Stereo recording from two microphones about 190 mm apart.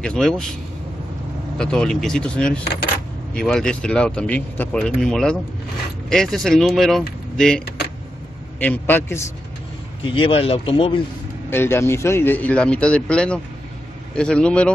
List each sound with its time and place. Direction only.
0.0 s speech: 5° left (ahead or behind)
1.6 s speech: 5° left (ahead or behind)
10.1 s speech: 30° left (ahead or behind)
11.5 s speech: 10° left (ahead or behind)